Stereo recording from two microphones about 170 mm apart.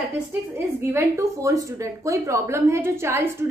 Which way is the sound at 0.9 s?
15° right (ahead or behind).